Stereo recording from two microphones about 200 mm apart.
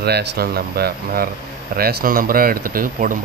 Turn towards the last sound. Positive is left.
turn(degrees=-45)  # may be behind; listen again after turning